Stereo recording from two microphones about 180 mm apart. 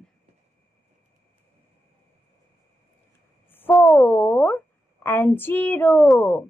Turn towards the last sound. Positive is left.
turn(degrees=10)  # may be behind; listen again after turning